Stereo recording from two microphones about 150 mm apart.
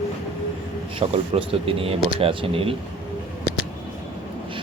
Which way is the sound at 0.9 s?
40° right (ahead or behind).